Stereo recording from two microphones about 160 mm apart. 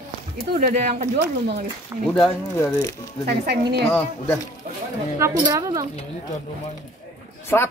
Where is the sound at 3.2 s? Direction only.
90° right.